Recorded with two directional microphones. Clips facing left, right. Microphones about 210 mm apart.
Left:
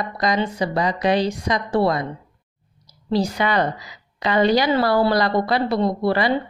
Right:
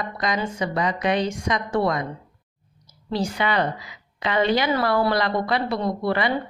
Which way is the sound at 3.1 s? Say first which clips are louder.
Left 4 dB; 40° left (ahead or behind).